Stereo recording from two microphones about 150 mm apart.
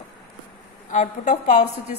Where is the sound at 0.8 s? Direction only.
60° left (ahead or behind).